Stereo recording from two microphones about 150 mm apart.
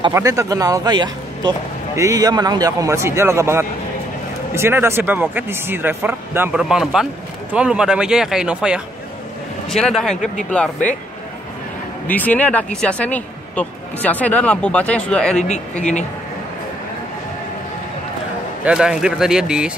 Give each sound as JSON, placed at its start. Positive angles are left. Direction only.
{"t": 0.1, "sound": "a man's voice", "side_deg": -20}
{"t": 6.6, "sound": "speech", "side_deg": 0}
{"t": 12.1, "sound": "speech", "side_deg": 10}
{"t": 15.8, "sound": "speech", "side_deg": 50}
{"t": 18.6, "sound": "speech", "side_deg": -5}